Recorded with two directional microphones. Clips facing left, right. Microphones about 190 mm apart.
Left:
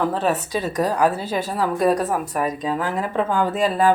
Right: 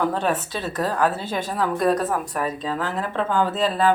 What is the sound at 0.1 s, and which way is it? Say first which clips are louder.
A woman's voice: left 2 dB; 5° left (ahead or behind).